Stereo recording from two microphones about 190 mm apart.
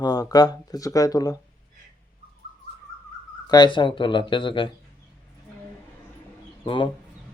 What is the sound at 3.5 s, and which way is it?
Speech, 25° left (ahead or behind).